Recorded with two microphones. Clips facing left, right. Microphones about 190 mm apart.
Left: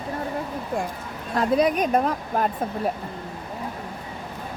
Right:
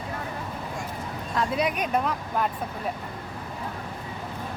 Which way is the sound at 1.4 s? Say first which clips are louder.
Left 6 dB; 40° left (ahead or behind).